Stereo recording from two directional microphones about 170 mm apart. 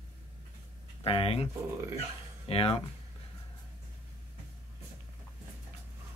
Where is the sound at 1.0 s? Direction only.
35° left (ahead or behind).